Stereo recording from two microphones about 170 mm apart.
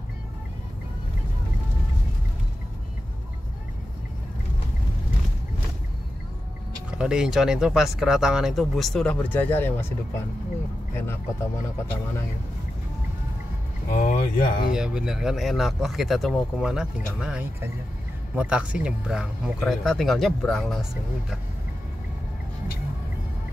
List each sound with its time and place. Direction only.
6.9 s speech: 5° right (ahead or behind); by 9.9 s 15° left (ahead or behind)
13.9 s speech: 60° left (ahead or behind)
14.7 s speech: 5° right (ahead or behind)